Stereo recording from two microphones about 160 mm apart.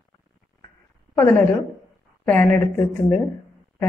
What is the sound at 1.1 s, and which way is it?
A woman's voice, 15° left (ahead or behind).